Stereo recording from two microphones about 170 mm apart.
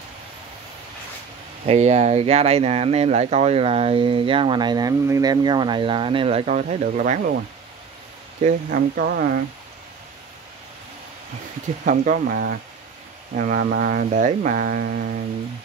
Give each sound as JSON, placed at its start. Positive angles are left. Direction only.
{"t": 1.7, "sound": "speech", "side_deg": -40}
{"t": 8.5, "sound": "speech", "side_deg": -60}
{"t": 11.8, "sound": "speech", "side_deg": -50}